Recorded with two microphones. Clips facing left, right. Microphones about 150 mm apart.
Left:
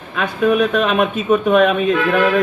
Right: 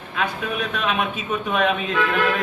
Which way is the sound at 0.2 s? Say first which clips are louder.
Left 10 dB; 60° left (ahead or behind).